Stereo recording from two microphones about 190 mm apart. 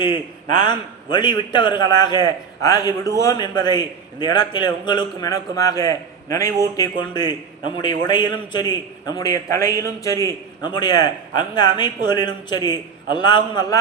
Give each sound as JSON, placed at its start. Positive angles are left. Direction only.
{"t": 0.6, "sound": "a man's voice", "side_deg": 25}